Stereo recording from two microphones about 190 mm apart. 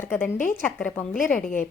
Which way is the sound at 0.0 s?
10° left (ahead or behind).